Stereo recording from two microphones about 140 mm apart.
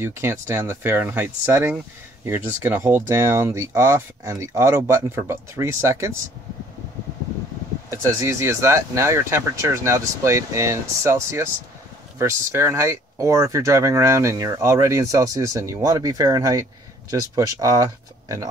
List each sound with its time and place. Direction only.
0.0 s speech: 20° right (ahead or behind)
7.9 s speech: 20° right (ahead or behind)